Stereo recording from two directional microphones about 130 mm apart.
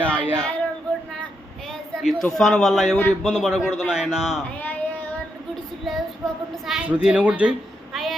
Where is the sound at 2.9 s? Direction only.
15° left (ahead or behind).